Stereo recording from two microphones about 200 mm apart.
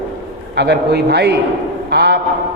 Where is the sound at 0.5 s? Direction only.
60° right (ahead or behind).